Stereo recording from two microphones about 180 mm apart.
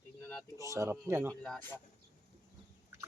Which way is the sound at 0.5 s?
15° right (ahead or behind).